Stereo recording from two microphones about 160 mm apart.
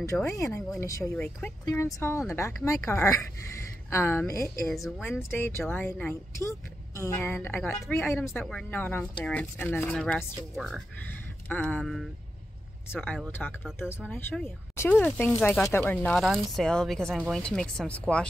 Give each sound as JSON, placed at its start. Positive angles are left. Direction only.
{"t": 0.0, "sound": "speech", "side_deg": 20}
{"t": 13.4, "sound": "speech", "side_deg": 0}
{"t": 13.7, "sound": "speech", "side_deg": 10}